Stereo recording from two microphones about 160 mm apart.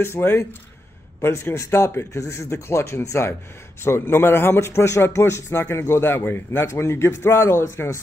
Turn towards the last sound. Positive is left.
turn(degrees=15)  # may be behind; listen again after turning